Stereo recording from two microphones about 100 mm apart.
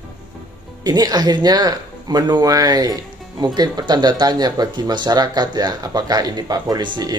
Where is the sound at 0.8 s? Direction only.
40° right (ahead or behind).